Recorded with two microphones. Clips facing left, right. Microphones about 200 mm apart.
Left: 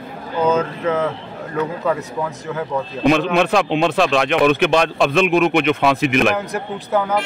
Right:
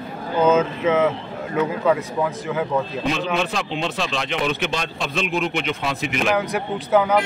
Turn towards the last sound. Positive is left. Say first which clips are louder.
# right 2 dB
turn(degrees=0)  # may be behind; listen again after turning